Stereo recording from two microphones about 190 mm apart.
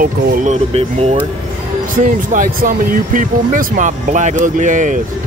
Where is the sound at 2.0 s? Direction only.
45° right (ahead or behind).